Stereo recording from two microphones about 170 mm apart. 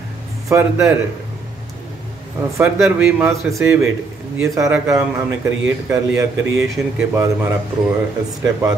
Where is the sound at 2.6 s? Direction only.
10° right (ahead or behind).